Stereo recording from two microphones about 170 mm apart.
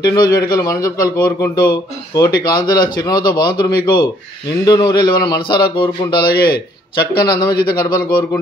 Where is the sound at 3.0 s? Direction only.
25° left (ahead or behind).